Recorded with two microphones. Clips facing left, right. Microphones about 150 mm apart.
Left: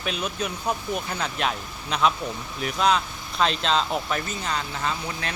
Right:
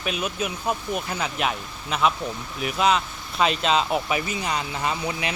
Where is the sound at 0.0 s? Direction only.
5° right (ahead or behind).